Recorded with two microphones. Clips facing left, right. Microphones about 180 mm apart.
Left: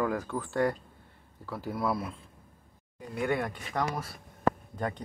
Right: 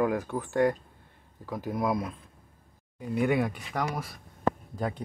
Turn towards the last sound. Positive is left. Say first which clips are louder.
# right 1 dB
turn(degrees=-10)  # may be behind; listen again after turning